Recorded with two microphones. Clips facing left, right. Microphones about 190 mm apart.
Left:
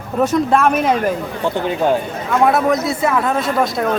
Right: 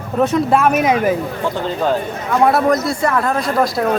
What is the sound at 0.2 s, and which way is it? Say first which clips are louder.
Speech: even; centre (ahead or behind).